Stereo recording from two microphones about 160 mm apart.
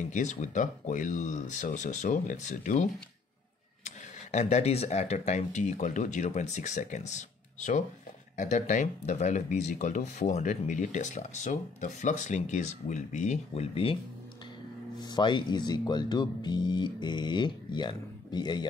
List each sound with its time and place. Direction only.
0.0 s speech: 50° left (ahead or behind)
15.0 s speech: 25° left (ahead or behind)